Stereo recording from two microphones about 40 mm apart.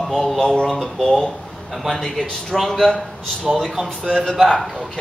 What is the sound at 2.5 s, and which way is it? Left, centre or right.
Speech, centre.